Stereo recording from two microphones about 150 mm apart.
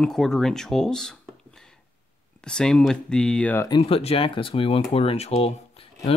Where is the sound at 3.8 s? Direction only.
40° left (ahead or behind).